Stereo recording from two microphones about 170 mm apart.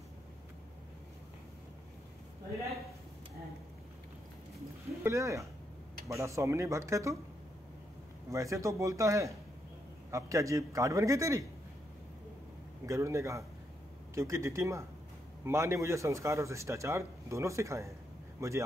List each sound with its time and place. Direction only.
5.0 s speech: 15° right (ahead or behind)
8.3 s a man's voice: 20° right (ahead or behind)
12.8 s speech: 15° right (ahead or behind)